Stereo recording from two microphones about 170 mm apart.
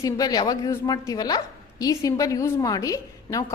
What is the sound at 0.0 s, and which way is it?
A woman's voice, 20° left (ahead or behind).